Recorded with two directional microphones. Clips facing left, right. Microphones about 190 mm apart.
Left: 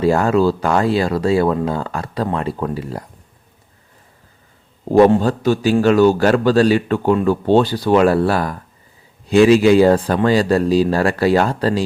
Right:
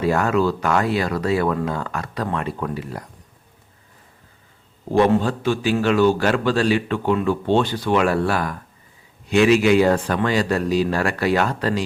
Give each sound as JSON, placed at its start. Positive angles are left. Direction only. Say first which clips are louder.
{"t": 0.0, "sound": "speech", "louder": "left 4 dB", "side_deg": 30}
{"t": 5.1, "sound": "a man's voice", "louder": "left 4 dB", "side_deg": 40}